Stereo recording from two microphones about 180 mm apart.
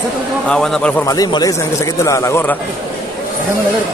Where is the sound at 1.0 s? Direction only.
20° left (ahead or behind).